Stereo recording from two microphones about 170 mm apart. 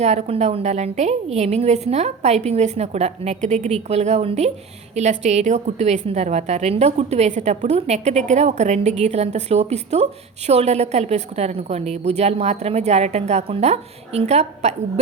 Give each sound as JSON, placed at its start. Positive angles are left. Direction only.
{"t": 0.0, "sound": "a woman's voice", "side_deg": -40}